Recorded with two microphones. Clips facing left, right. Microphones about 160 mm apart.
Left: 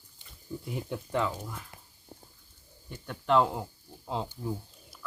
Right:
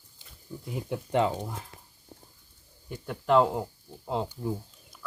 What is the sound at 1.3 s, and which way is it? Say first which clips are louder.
Speech: right 5 dB; 35° right (ahead or behind).